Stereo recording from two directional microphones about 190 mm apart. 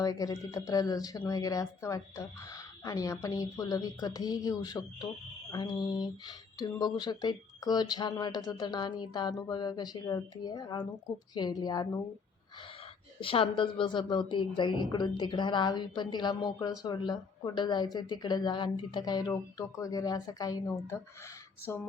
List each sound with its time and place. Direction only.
0.0 s speech: 20° left (ahead or behind)
13.1 s speech: 30° left (ahead or behind)